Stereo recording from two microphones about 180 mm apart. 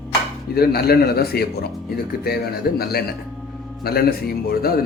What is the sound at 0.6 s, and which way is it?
A man's voice, 60° left (ahead or behind).